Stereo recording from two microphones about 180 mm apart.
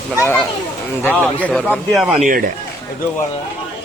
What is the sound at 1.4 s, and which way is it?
Speech, 5° left (ahead or behind).